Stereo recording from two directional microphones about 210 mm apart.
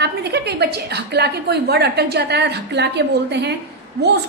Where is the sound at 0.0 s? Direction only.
50° right (ahead or behind).